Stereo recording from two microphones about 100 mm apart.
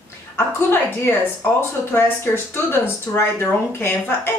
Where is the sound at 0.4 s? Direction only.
20° left (ahead or behind).